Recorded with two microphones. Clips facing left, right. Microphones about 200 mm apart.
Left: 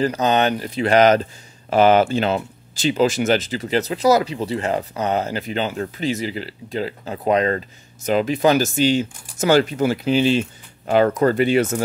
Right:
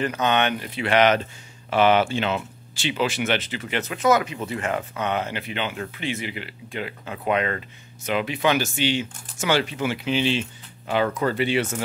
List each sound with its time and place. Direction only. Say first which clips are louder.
0.0 s speech: left 4 dB; 35° left (ahead or behind)